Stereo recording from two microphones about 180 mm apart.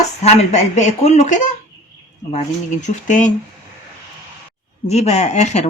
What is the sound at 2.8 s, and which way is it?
Speech, 40° left (ahead or behind).